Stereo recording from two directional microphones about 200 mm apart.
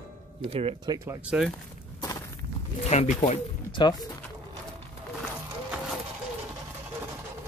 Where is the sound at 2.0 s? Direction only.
15° left (ahead or behind).